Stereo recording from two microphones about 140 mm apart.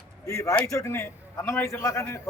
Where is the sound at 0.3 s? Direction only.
20° left (ahead or behind).